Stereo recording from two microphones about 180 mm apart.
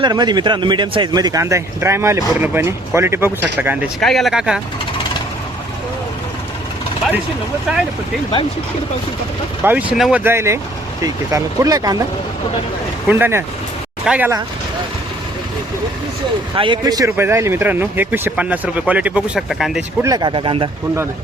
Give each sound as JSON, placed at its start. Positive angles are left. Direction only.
{"t": 0.0, "sound": "speech", "side_deg": -25}
{"t": 4.0, "sound": "speech", "side_deg": 0}
{"t": 9.6, "sound": "speech", "side_deg": -10}
{"t": 13.1, "sound": "speech", "side_deg": -10}
{"t": 16.6, "sound": "speech", "side_deg": -25}
{"t": 20.0, "sound": "speech", "side_deg": -20}